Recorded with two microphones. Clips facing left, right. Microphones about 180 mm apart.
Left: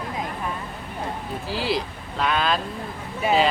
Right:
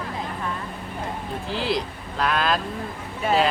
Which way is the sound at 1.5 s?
5° left (ahead or behind).